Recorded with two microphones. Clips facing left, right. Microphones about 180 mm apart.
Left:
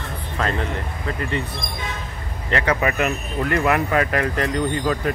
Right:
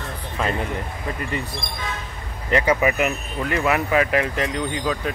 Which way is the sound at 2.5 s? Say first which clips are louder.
Right 2 dB; 10° right (ahead or behind).